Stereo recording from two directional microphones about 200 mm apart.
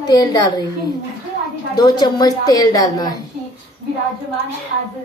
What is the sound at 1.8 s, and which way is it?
A woman's voice, 20° left (ahead or behind).